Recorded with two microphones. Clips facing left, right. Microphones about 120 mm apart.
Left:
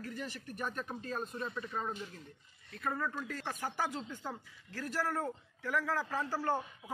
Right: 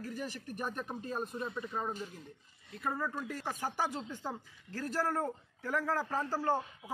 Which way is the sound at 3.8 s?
30° right (ahead or behind).